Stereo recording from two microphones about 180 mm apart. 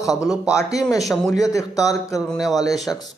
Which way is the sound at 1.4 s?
20° left (ahead or behind).